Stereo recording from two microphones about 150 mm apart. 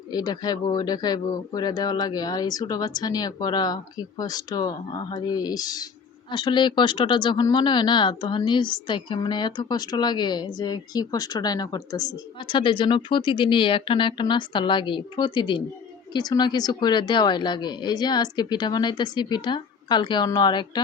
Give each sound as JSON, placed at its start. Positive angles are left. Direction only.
{"t": 0.1, "sound": "speech", "side_deg": 25}